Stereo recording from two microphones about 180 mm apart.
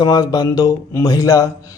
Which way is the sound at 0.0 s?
20° left (ahead or behind).